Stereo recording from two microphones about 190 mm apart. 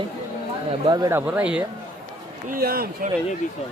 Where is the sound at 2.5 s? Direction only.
55° right (ahead or behind).